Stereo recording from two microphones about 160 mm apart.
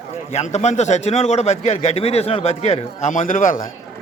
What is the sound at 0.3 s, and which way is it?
A man's voice, 45° left (ahead or behind).